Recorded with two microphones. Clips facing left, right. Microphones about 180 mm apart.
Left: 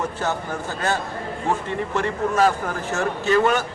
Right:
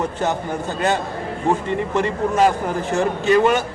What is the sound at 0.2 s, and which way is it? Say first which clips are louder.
A man's voice: right 3 dB; 20° right (ahead or behind).